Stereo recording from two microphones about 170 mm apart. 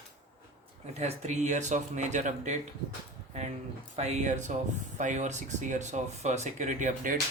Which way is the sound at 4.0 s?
40° right (ahead or behind).